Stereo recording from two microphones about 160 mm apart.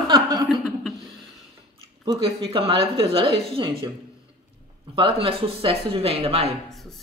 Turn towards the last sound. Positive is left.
turn(degrees=0)  # may be behind; listen again after turning